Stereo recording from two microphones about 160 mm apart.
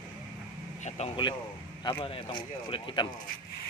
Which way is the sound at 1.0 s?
45° left (ahead or behind).